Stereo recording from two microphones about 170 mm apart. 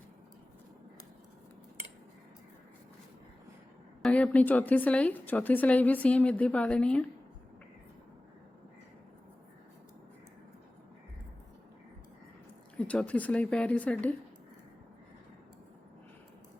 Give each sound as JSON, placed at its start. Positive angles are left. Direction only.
{"t": 4.0, "sound": "a woman's voice", "side_deg": 10}
{"t": 12.9, "sound": "a woman's voice", "side_deg": 10}